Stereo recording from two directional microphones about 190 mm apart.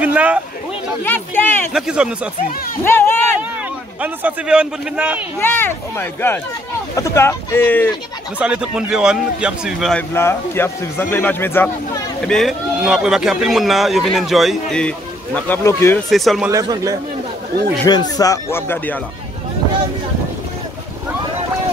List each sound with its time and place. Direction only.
0.0 s a sound: 5° right (ahead or behind)
1.0 s speech: 10° left (ahead or behind)
1.7 s a man's voice: 5° right (ahead or behind)
2.8 s speech: 10° left (ahead or behind)
4.0 s a man's voice: 5° right (ahead or behind)
5.4 s speech: 10° left (ahead or behind)
8.4 s a man's voice: 5° right (ahead or behind)
10.1 s speech: 10° left (ahead or behind)
12.3 s a man's voice: centre (ahead or behind)
16.1 s a man's voice: centre (ahead or behind)
16.4 s a man's voice: 20° right (ahead or behind)
17.8 s speech: 20° left (ahead or behind)